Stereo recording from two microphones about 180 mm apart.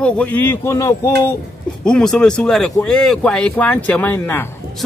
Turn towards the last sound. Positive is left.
turn(degrees=10)  # may be behind; listen again after turning